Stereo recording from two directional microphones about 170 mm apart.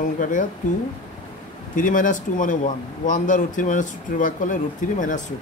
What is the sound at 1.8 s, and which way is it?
Speech, 50° left (ahead or behind).